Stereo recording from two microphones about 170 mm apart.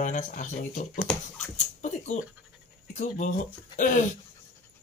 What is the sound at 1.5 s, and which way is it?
Rodents, 45° left (ahead or behind).